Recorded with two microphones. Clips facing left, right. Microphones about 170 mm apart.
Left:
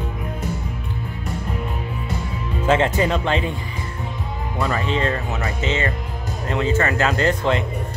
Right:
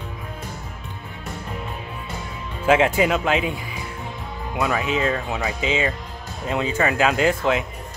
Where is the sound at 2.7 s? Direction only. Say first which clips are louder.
Right 1 dB; 10° right (ahead or behind).